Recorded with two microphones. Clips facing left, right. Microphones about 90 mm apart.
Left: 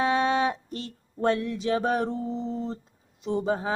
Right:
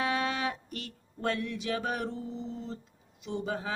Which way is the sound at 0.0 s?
30° left (ahead or behind).